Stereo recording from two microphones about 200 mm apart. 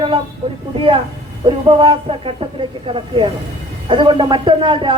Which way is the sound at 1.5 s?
25° right (ahead or behind).